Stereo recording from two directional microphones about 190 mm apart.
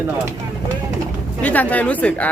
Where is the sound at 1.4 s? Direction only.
10° left (ahead or behind).